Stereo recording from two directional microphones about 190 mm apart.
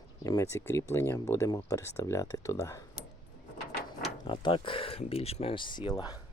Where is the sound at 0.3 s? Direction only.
15° left (ahead or behind).